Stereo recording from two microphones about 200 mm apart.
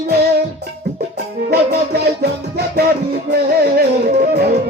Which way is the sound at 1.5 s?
55° right (ahead or behind).